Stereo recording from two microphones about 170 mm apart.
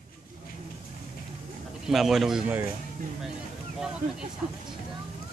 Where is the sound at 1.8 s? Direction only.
Centre (ahead or behind).